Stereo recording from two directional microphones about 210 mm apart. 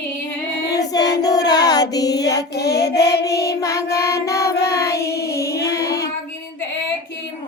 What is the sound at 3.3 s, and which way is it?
Child singing, 15° left (ahead or behind).